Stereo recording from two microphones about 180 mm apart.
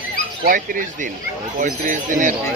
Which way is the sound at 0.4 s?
55° right (ahead or behind).